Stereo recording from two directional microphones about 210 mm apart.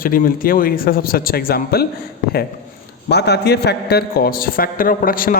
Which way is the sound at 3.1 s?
50° left (ahead or behind).